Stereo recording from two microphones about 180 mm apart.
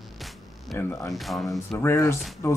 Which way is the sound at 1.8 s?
15° left (ahead or behind).